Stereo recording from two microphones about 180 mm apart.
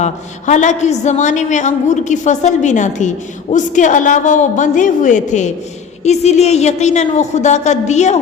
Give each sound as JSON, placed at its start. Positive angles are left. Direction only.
{"t": 0.0, "sound": "a woman's voice", "side_deg": 40}